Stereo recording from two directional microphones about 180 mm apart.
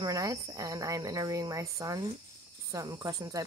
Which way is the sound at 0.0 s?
20° right (ahead or behind).